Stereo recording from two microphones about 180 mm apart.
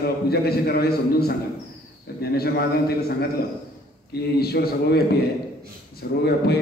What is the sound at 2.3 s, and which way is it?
A man's voice, 60° left (ahead or behind).